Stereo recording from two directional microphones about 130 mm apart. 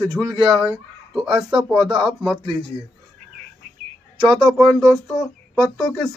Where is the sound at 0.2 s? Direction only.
30° right (ahead or behind).